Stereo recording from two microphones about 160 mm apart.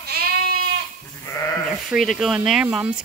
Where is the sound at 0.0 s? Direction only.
75° right (ahead or behind).